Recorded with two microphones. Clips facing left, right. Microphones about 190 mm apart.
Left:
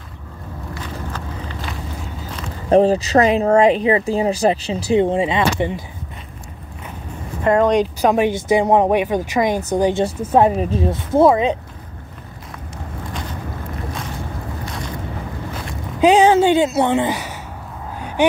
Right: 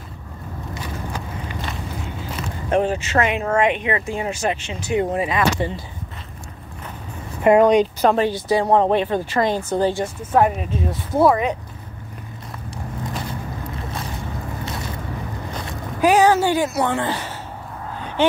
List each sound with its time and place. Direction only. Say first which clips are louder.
2.7 s speech: left 7 dB; 35° left (ahead or behind)
7.4 s speech: right 2 dB; 10° right (ahead or behind)
7.8 s speech: left 1 dB; 10° left (ahead or behind)
10.0 s speech: left 3 dB; 30° left (ahead or behind)
10.9 s speech: left 3 dB; 25° left (ahead or behind)
16.0 s speech: left 3 dB; 20° left (ahead or behind)